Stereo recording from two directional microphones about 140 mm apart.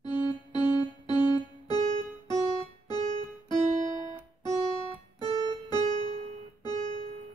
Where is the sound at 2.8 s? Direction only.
30° left (ahead or behind).